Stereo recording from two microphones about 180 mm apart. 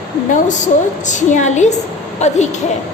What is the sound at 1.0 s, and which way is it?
Speech, 40° left (ahead or behind).